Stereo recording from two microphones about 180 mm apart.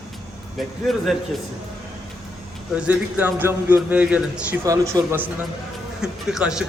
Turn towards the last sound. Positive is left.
turn(degrees=-5)  # may be behind; listen again after turning